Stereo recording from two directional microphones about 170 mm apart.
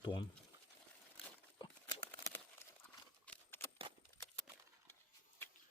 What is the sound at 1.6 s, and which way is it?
Horse, 20° left (ahead or behind).